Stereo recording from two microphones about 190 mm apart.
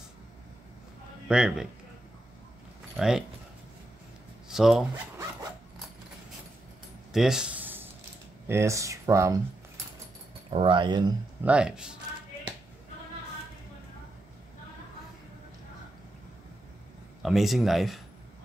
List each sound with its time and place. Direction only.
1.3 s speech: 5° right (ahead or behind)
3.0 s speech: 5° right (ahead or behind)
4.5 s speech: centre (ahead or behind)
7.1 s a sound: centre (ahead or behind)
8.5 s speech: 15° right (ahead or behind)
10.5 s speech: 25° right (ahead or behind)
11.4 s speech: 5° right (ahead or behind)
17.2 s speech: centre (ahead or behind)